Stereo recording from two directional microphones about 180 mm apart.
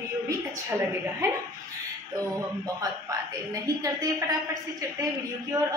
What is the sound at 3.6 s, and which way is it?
Speech, 20° right (ahead or behind).